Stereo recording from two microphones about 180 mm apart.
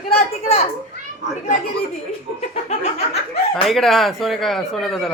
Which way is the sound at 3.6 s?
Centre (ahead or behind).